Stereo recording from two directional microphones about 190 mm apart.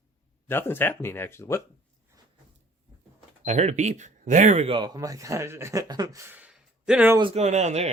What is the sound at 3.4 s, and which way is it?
Speech, 35° right (ahead or behind).